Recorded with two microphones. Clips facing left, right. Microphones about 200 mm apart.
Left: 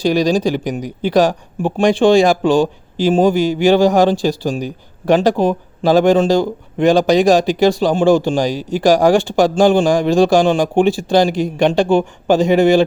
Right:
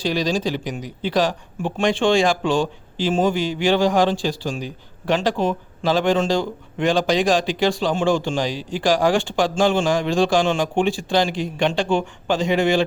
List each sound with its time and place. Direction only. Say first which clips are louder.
0.0 s speech: left 7 dB; 45° left (ahead or behind)